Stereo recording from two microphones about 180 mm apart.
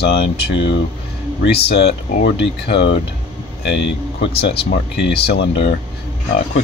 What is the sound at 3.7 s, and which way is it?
Speech, 80° left.